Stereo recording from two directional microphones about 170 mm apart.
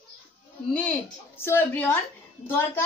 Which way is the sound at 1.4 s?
15° left (ahead or behind).